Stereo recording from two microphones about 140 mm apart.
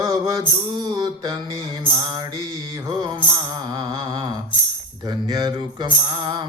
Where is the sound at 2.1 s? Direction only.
30° right (ahead or behind).